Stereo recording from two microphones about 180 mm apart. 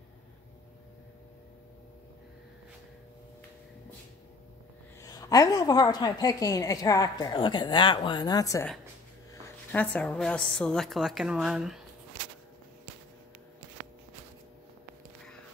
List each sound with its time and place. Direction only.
5.0 s a woman's voice: 20° left (ahead or behind)
9.7 s a woman's voice: 5° left (ahead or behind)